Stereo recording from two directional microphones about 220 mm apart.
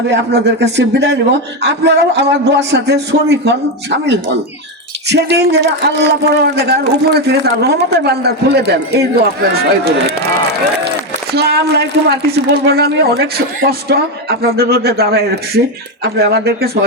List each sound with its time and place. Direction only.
0.1 s a man's voice: 50° right (ahead or behind)